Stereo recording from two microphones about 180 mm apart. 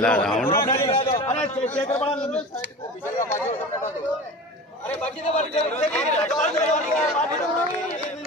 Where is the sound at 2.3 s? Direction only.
10° left (ahead or behind).